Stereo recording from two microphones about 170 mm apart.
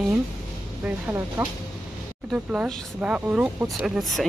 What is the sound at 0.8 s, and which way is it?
A woman's voice, 10° right (ahead or behind).